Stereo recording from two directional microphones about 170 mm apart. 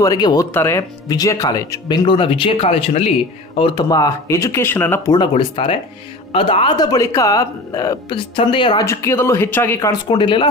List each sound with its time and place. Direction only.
0.0 s speech: 20° left (ahead or behind)
5.1 s speech: 30° left (ahead or behind)
8.8 s speech: 15° left (ahead or behind)
10.0 s speech: 30° left (ahead or behind)